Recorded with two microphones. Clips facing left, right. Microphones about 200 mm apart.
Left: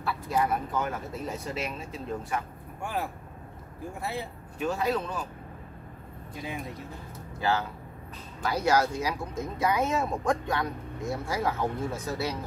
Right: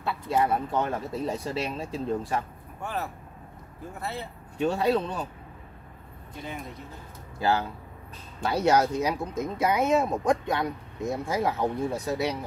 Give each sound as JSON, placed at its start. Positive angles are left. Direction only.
{"t": 0.0, "sound": "speech", "side_deg": -25}
{"t": 2.8, "sound": "speech", "side_deg": 10}
{"t": 4.6, "sound": "speech", "side_deg": -30}
{"t": 8.4, "sound": "speech", "side_deg": -25}